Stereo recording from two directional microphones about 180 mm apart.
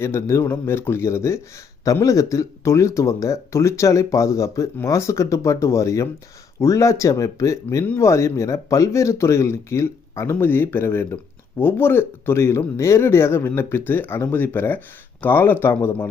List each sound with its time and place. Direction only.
0.0 s speech: 15° left (ahead or behind)